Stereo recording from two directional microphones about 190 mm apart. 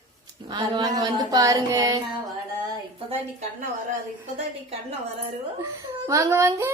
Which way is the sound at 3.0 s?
35° right (ahead or behind).